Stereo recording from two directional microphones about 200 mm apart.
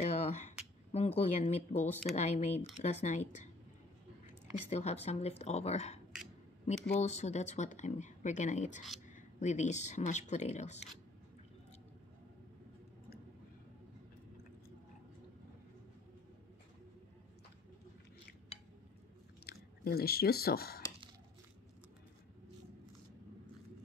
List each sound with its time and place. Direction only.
0.0 s a sound: 35° left (ahead or behind)
0.9 s speech: 30° left (ahead or behind)
4.6 s speech: 30° left (ahead or behind)
19.4 s speech: 50° left (ahead or behind)